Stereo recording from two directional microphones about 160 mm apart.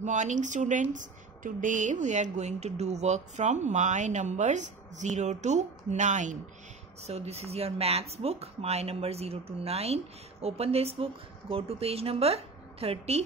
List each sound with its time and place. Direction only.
0.0 s speech: 50° right (ahead or behind)